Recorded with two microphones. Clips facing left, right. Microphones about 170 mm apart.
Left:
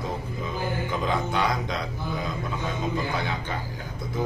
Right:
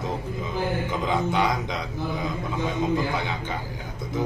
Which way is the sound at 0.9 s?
15° right (ahead or behind).